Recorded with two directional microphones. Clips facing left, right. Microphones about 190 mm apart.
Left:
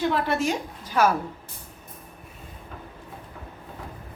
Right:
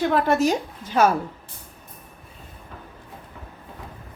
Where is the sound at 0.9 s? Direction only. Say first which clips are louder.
Right 3 dB; 25° right (ahead or behind).